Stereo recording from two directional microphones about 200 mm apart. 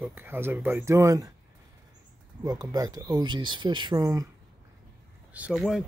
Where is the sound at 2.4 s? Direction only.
20° right (ahead or behind).